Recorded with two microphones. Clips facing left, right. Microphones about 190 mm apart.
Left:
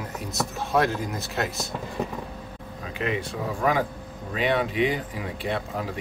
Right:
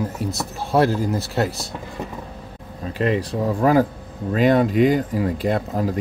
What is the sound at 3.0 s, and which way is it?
Speech, 35° right (ahead or behind).